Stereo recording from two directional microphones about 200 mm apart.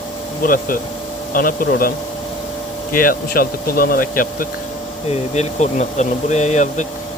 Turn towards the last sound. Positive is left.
turn(degrees=35)  # may be behind; listen again after turning